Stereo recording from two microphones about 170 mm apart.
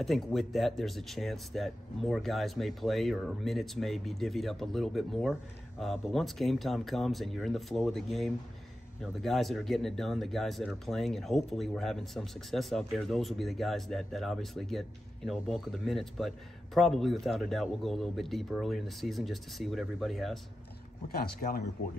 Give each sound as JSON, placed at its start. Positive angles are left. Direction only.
{"t": 0.0, "sound": "speech", "side_deg": 0}
{"t": 21.1, "sound": "speech", "side_deg": 60}